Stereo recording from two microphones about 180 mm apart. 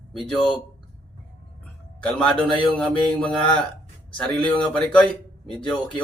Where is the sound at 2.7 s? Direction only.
5° left (ahead or behind).